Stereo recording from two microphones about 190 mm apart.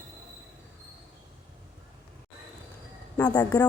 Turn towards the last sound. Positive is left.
turn(degrees=20)  # may be behind; listen again after turning